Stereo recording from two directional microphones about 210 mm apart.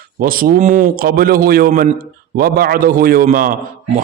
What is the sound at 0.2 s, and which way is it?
A man's voice, 45° right (ahead or behind).